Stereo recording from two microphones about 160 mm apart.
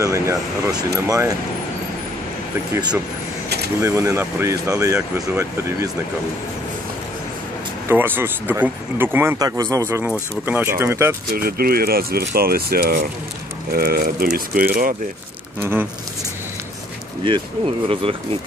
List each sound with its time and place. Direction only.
0.0 s speech: 20° right (ahead or behind)
2.7 s speech: 25° right (ahead or behind)
7.9 s speech: 10° right (ahead or behind)
11.3 s speech: 70° right (ahead or behind)
15.6 s speech: 10° right (ahead or behind)